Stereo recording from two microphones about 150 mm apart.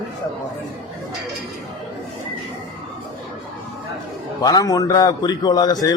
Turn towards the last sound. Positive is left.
turn(degrees=25)  # may be behind; listen again after turning